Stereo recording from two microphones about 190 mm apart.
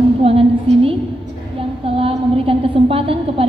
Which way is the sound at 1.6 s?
30° right (ahead or behind).